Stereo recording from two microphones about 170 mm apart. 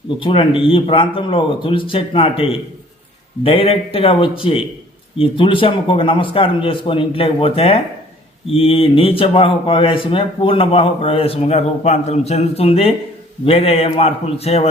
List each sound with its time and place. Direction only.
0.2 s speech: 30° left (ahead or behind)